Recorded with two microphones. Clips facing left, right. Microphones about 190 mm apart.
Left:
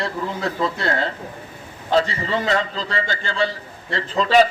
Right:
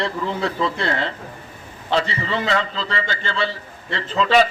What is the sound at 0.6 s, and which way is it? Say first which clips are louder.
A man's voice: even; 45° left (ahead or behind).